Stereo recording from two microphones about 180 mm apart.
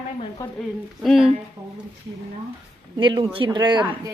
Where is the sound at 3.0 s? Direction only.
25° right (ahead or behind).